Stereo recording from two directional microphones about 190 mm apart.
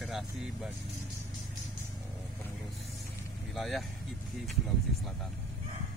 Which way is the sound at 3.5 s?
Centre (ahead or behind).